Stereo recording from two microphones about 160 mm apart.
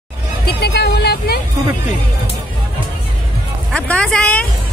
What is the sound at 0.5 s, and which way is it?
Music, 90° left.